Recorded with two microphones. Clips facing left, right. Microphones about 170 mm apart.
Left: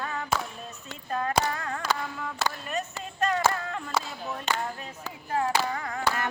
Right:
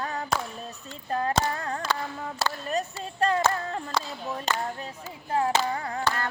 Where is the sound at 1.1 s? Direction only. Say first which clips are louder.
Right 2 dB; 30° right (ahead or behind).